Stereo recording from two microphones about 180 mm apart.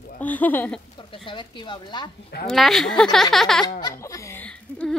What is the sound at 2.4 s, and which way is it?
Speech, centre (ahead or behind).